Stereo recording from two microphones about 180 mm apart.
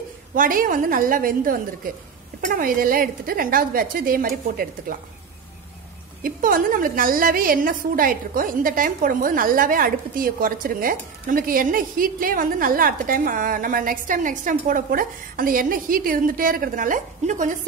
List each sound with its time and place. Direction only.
0.3 s a woman's voice: 50° right (ahead or behind)
6.2 s a woman's voice: 50° right (ahead or behind)